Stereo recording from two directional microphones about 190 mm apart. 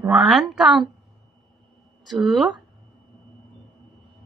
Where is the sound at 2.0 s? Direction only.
Centre (ahead or behind).